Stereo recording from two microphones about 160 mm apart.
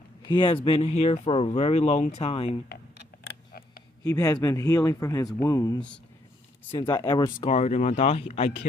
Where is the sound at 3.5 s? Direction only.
65° left (ahead or behind).